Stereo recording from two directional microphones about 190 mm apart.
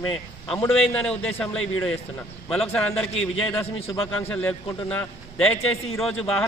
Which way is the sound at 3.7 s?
30° left (ahead or behind).